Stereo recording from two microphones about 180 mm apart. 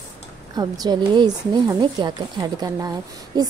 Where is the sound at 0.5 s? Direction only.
20° right (ahead or behind).